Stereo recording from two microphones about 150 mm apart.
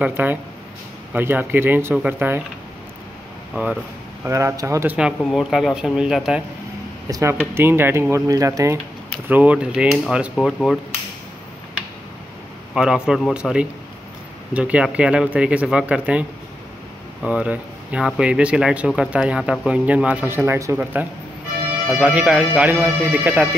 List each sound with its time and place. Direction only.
0.0 s speech: 10° right (ahead or behind)
3.6 s speech: 10° right (ahead or behind)
4.9 s speech: 5° right (ahead or behind)
7.1 s speech: 20° right (ahead or behind)
9.3 s speech: 10° right (ahead or behind)
12.7 s speech: 5° right (ahead or behind)